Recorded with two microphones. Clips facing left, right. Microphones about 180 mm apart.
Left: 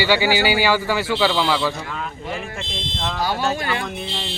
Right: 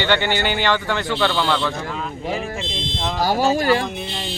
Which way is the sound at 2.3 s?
35° right (ahead or behind).